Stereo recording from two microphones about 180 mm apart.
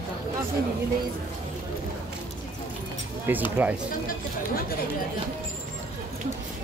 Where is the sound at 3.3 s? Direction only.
10° right (ahead or behind).